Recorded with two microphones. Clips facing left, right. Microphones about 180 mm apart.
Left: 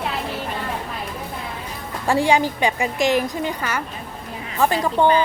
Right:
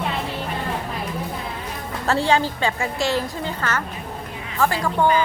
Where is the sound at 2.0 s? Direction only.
15° left (ahead or behind).